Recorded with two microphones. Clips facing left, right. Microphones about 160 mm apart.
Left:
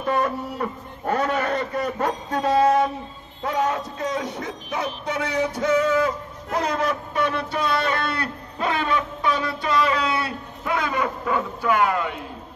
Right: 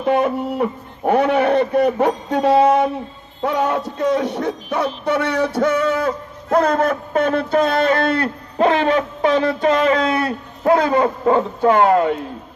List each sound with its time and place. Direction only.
0.0 s a man's voice: 60° right (ahead or behind); by 12.2 s 35° right (ahead or behind)